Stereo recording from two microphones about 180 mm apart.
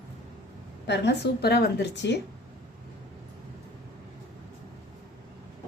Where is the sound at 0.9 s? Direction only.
70° left (ahead or behind).